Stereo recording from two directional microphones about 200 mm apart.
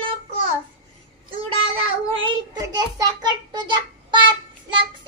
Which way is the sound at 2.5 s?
20° right (ahead or behind).